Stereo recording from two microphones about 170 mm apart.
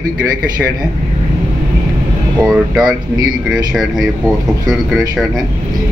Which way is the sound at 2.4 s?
5° right (ahead or behind).